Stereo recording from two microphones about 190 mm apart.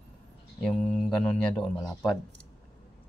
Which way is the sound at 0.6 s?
5° left (ahead or behind).